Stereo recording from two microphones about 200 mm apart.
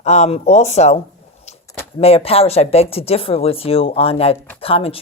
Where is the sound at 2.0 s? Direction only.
30° left (ahead or behind).